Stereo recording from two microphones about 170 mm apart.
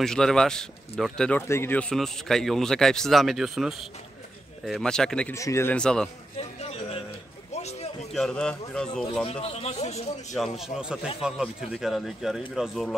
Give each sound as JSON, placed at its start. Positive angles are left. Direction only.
{"t": 0.0, "sound": "speech", "side_deg": 5}
{"t": 5.3, "sound": "speech", "side_deg": 15}
{"t": 6.6, "sound": "a sound", "side_deg": 35}
{"t": 8.1, "sound": "speech", "side_deg": 5}
{"t": 9.2, "sound": "speech", "side_deg": 35}
{"t": 10.3, "sound": "speech", "side_deg": 0}